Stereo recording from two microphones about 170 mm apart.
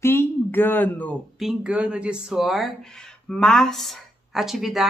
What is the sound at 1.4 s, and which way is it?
A woman's voice, 5° right (ahead or behind).